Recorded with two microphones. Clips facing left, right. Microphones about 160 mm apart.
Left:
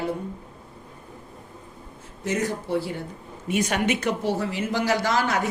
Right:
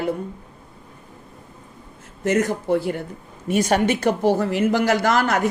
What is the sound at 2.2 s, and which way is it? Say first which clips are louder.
A woman's voice: right 6 dB; 60° right (ahead or behind).